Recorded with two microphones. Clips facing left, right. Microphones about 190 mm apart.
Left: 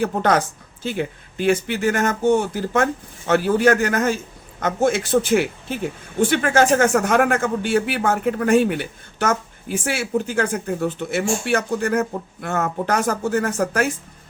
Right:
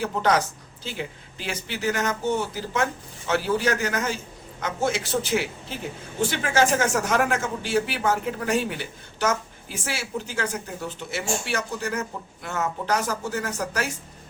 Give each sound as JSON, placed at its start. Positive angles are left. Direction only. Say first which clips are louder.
{"t": 0.0, "sound": "speech", "louder": "left 4 dB", "side_deg": 55}